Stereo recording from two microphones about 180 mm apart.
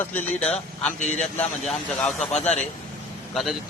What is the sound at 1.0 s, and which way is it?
Speech, 40° left (ahead or behind).